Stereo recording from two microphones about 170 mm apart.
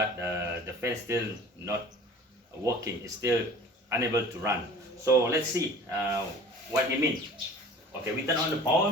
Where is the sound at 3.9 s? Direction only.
15° right (ahead or behind).